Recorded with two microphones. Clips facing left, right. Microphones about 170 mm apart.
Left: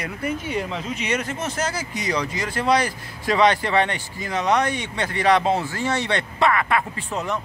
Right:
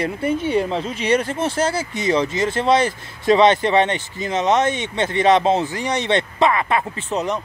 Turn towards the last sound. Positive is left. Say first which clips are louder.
# right 4 dB
turn(degrees=-20)  # may be behind; listen again after turning